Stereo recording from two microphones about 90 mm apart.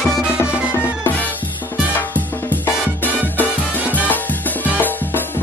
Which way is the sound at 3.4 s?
20° left (ahead or behind).